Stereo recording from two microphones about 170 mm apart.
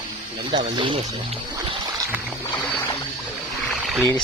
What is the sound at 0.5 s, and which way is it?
Speech, 30° right (ahead or behind).